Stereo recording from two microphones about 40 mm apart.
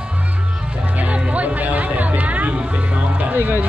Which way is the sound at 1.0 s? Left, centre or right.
Right.